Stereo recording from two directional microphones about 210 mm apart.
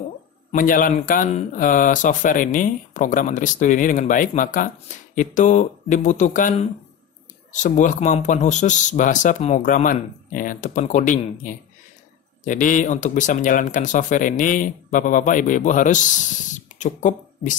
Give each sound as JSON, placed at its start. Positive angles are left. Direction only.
{"t": 0.5, "sound": "speech", "side_deg": 40}